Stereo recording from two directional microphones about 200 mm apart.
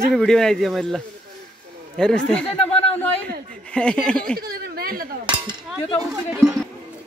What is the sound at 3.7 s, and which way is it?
Speech, 5° left (ahead or behind).